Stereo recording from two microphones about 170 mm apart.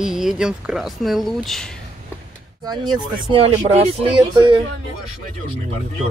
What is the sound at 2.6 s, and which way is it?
Speech, 25° right (ahead or behind).